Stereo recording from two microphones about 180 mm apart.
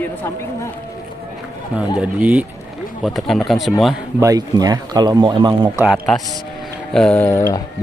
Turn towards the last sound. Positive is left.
turn(degrees=15)  # may be behind; listen again after turning